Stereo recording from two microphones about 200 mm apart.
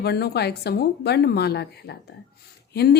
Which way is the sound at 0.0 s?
55° left (ahead or behind).